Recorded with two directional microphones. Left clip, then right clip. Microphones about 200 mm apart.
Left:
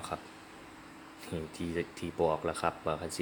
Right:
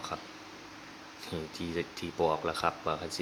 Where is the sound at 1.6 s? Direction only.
Centre (ahead or behind).